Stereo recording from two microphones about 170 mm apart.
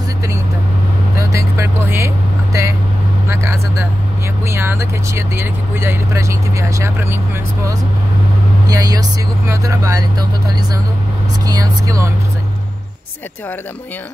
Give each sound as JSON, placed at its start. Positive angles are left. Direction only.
{"t": 1.1, "sound": "vehicle", "side_deg": -15}
{"t": 4.5, "sound": "speech", "side_deg": -15}
{"t": 8.6, "sound": "speech", "side_deg": -20}
{"t": 11.4, "sound": "speech", "side_deg": -20}